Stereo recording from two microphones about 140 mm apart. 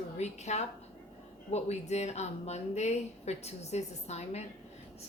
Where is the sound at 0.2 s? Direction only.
50° left (ahead or behind).